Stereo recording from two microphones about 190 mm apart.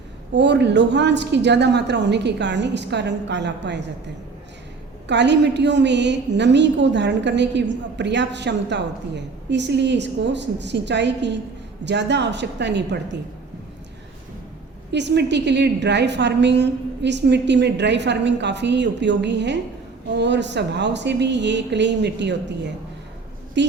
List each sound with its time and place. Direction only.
0.3 s a woman's voice: 65° right (ahead or behind)
5.0 s a woman's voice: 65° right (ahead or behind)
14.9 s a woman's voice: 65° right (ahead or behind)
23.6 s a woman's voice: 65° right (ahead or behind)